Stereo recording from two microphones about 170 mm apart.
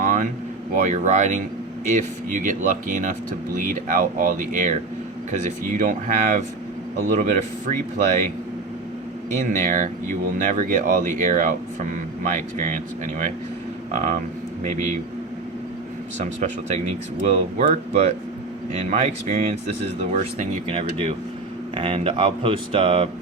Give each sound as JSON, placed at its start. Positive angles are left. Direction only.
{"t": 0.0, "sound": "a sound", "side_deg": -50}
{"t": 0.8, "sound": "speech", "side_deg": -45}
{"t": 9.6, "sound": "speech", "side_deg": -50}
{"t": 17.6, "sound": "speech", "side_deg": -40}